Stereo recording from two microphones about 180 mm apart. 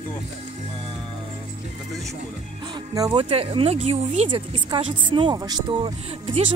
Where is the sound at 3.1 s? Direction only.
30° right (ahead or behind).